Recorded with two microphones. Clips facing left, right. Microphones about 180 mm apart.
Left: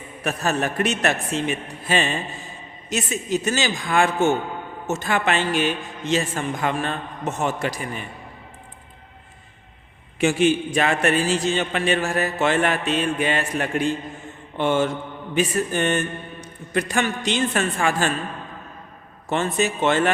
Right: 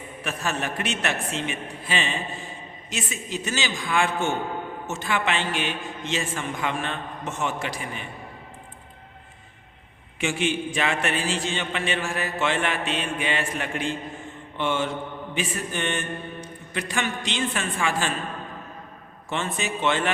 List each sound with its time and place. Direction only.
0.3 s a man's voice: 40° left (ahead or behind)
10.2 s a man's voice: 40° left (ahead or behind)
19.3 s a man's voice: 40° left (ahead or behind)